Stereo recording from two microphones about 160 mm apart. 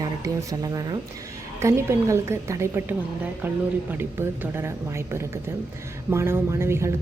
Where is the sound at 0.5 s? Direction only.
25° right (ahead or behind).